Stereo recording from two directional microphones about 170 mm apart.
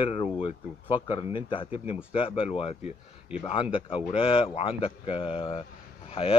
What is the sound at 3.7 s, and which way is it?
Speech, 30° left (ahead or behind).